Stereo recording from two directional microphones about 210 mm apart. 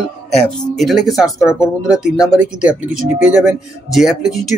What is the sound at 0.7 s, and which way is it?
Speech, centre (ahead or behind).